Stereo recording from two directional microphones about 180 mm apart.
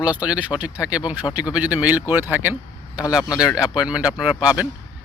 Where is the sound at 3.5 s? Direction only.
5° right (ahead or behind).